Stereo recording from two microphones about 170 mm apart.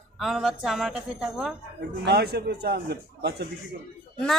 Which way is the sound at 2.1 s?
70° right (ahead or behind).